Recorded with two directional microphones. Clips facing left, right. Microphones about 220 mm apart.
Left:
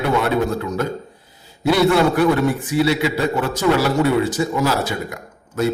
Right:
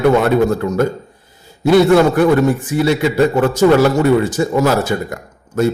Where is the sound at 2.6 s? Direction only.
50° right (ahead or behind).